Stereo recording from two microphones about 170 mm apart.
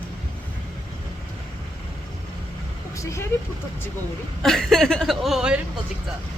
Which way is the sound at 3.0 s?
15° left (ahead or behind).